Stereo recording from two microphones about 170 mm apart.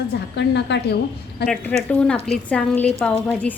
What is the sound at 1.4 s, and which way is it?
Speech, 75° left (ahead or behind).